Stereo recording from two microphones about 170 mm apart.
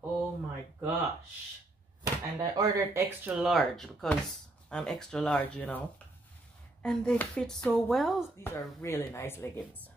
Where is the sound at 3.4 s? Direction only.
Centre (ahead or behind).